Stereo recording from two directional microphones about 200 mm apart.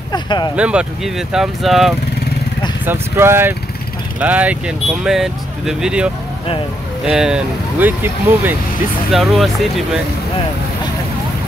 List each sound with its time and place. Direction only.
0.1 s a sound: 20° left (ahead or behind)
0.6 s speech: 5° right (ahead or behind)
2.8 s speech: 10° right (ahead or behind)